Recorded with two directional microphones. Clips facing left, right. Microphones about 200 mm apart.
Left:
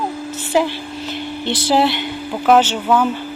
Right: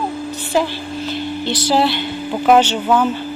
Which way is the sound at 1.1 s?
25° left (ahead or behind).